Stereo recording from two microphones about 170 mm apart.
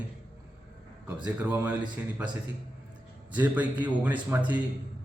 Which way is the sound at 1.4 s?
10° right (ahead or behind).